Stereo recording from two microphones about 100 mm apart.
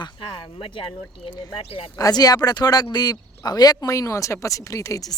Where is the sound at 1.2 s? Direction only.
70° left (ahead or behind).